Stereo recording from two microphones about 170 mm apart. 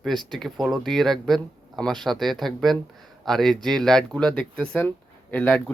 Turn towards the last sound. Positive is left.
turn(degrees=5)  # may be behind; listen again after turning